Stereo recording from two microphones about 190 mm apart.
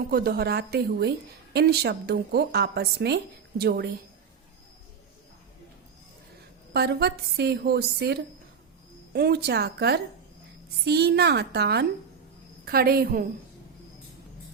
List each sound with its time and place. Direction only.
0.1 s a woman's voice: 55° right (ahead or behind)
6.7 s a woman's voice: 60° right (ahead or behind)